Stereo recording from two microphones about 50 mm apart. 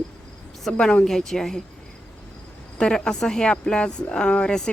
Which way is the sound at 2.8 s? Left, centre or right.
Centre.